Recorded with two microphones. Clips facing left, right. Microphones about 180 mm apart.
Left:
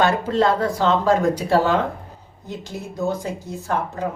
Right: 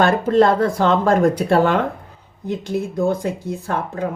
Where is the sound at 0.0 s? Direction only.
50° right (ahead or behind).